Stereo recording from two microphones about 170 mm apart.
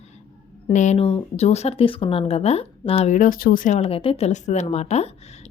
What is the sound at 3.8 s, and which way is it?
Speech, 35° left (ahead or behind).